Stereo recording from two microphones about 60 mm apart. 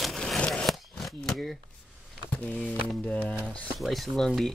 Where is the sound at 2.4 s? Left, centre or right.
Left.